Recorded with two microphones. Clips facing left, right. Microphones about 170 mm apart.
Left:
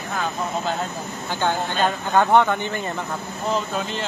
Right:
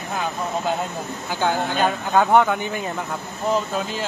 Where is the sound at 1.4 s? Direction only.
5° right (ahead or behind).